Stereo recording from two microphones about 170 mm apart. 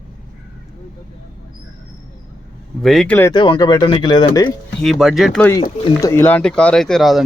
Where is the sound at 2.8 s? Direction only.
5° left (ahead or behind).